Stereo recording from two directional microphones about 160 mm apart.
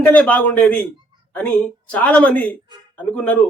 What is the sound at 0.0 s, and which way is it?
A woman's voice, 10° left (ahead or behind).